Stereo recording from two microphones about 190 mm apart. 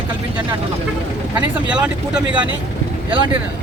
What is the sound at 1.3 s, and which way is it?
Speech, 5° right (ahead or behind).